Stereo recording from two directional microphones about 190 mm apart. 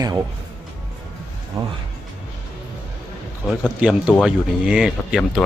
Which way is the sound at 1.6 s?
25° right (ahead or behind).